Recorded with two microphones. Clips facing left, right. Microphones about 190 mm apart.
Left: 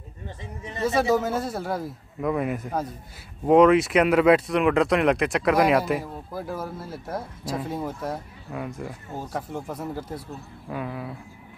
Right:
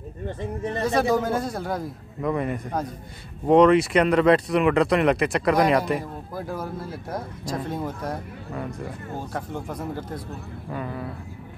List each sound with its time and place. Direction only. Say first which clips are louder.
0.4 s speech: right 6 dB; 55° right (ahead or behind)
0.8 s speech: left 1 dB; 5° left (ahead or behind)